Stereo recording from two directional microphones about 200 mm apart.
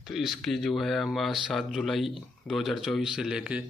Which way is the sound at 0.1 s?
Centre (ahead or behind).